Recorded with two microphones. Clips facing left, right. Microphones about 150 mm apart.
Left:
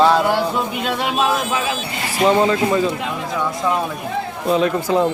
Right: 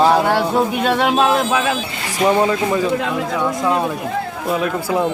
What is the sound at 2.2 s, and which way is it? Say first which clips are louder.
Speech: even; 10° right (ahead or behind).